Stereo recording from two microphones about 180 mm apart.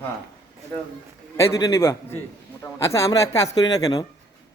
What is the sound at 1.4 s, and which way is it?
A man's voice, 15° left (ahead or behind).